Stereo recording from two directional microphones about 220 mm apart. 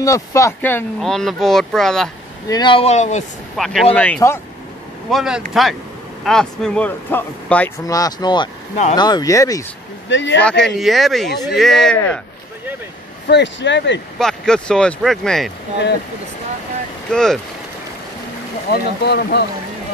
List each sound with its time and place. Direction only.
0.0 s speech: 15° left (ahead or behind)
2.4 s speech: 20° left (ahead or behind)
3.5 s speech: centre (ahead or behind)
5.1 s speech: centre (ahead or behind); by 9.7 s 15° left (ahead or behind)
10.0 s speech: 55° left (ahead or behind)
10.4 s speech: 5° left (ahead or behind)
13.3 s speech: 55° left (ahead or behind)
14.1 s speech: 5° left (ahead or behind)
17.1 s speech: 5° left (ahead or behind)
18.7 s speech: 45° left (ahead or behind)